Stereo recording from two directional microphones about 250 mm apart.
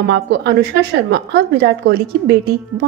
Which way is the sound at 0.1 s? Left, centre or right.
Right.